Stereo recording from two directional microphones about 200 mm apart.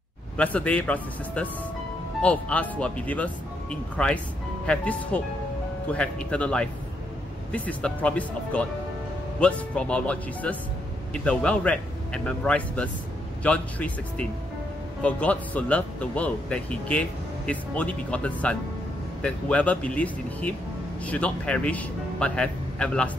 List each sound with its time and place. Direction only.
0.4 s speech: 5° left (ahead or behind)